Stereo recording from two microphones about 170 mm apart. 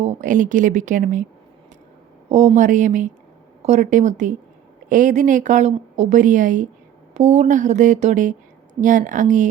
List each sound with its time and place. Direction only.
0.0 s speech: 45° right (ahead or behind)
2.3 s speech: 40° right (ahead or behind)